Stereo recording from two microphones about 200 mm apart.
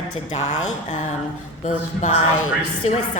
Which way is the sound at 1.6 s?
35° left (ahead or behind).